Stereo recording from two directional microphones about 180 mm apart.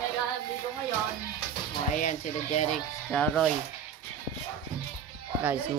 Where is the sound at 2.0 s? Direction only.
45° left (ahead or behind).